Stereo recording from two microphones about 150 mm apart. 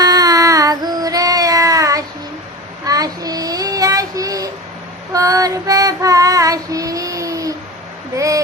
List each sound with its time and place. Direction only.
0.0 s child singing: 25° right (ahead or behind)
5.1 s female singing: 20° right (ahead or behind)
8.1 s a sound: 20° right (ahead or behind)